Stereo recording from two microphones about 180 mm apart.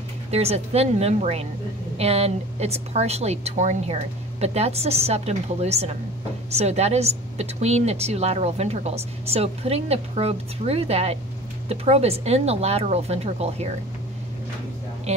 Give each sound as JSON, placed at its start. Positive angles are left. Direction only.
{"t": 0.3, "sound": "a woman's voice", "side_deg": -35}
{"t": 15.1, "sound": "a woman's voice", "side_deg": -35}